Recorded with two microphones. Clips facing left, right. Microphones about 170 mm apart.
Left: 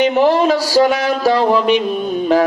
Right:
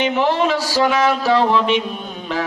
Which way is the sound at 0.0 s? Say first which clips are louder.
Left 5 dB; 40° left (ahead or behind).